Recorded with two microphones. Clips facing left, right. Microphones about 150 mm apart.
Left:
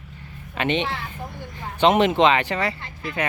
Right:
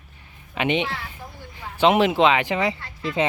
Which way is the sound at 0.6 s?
10° right (ahead or behind).